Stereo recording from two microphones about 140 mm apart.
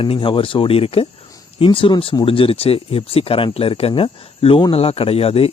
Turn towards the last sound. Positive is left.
turn(degrees=45)  # may be behind; listen again after turning